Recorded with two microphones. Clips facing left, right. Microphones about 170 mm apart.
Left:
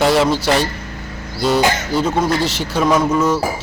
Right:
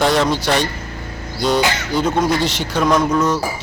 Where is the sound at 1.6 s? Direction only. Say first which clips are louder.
Left 2 dB; 45° left (ahead or behind).